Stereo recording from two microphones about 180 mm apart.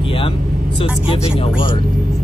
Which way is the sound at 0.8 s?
30° left (ahead or behind).